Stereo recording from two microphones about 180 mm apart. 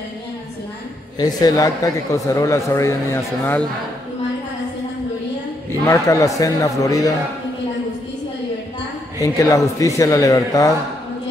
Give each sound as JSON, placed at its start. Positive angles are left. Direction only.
{"t": 1.1, "sound": "speech", "side_deg": 20}
{"t": 5.7, "sound": "a man's voice", "side_deg": 15}
{"t": 9.2, "sound": "a man's voice", "side_deg": 20}